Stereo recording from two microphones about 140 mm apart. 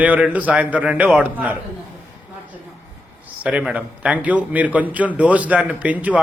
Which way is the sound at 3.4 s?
5° right (ahead or behind).